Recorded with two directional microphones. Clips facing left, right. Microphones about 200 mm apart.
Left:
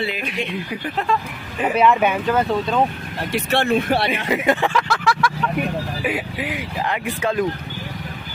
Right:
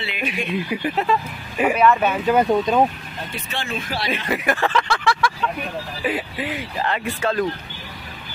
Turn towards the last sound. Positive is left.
turn(degrees=15)  # may be behind; listen again after turning